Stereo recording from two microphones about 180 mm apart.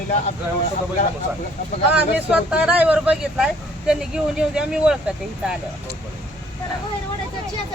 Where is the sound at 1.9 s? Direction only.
5° right (ahead or behind).